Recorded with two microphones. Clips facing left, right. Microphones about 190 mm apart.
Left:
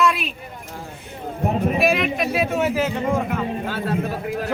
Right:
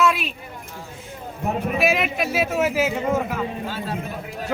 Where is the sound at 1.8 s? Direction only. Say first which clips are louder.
Left 2 dB; centre (ahead or behind).